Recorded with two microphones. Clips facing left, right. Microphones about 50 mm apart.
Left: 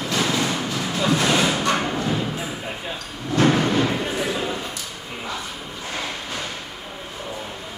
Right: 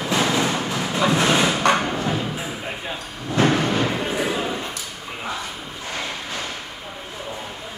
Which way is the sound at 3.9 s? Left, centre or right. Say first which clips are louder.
Right 1 dB; centre.